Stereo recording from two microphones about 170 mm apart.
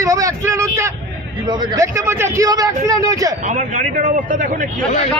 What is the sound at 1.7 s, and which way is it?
A man's voice, 15° right (ahead or behind).